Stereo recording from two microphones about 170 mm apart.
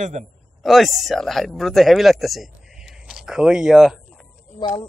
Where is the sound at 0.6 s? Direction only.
Centre (ahead or behind).